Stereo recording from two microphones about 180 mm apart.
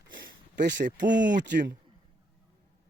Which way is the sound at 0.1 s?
55° right (ahead or behind).